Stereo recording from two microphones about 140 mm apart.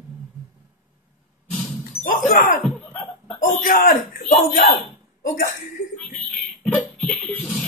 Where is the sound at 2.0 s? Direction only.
65° left (ahead or behind).